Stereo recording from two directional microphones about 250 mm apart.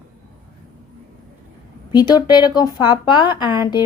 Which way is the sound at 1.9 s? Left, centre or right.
Centre.